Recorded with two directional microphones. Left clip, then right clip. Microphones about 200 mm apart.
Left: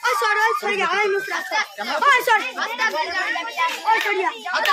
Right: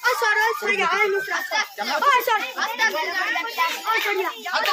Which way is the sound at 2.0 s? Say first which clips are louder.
Left 3 dB; 30° left (ahead or behind).